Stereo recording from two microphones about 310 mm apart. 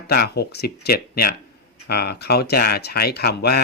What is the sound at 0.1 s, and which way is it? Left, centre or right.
Speech, left.